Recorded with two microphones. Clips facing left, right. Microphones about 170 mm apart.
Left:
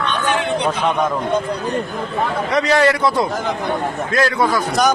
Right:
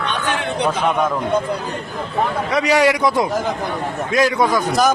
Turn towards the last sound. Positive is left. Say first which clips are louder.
# right 1 dB
turn(degrees=-15)  # may be behind; listen again after turning